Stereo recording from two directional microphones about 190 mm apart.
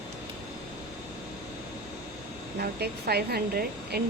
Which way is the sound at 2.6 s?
55° right (ahead or behind).